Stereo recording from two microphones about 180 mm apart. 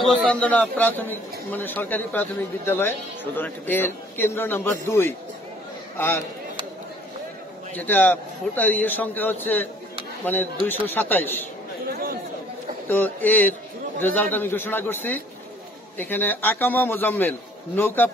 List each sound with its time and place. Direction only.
0.3 s a man's voice: 5° left (ahead or behind)
7.7 s a man's voice: 10° left (ahead or behind)
11.9 s speech: 55° right (ahead or behind)
12.8 s a man's voice: 10° left (ahead or behind)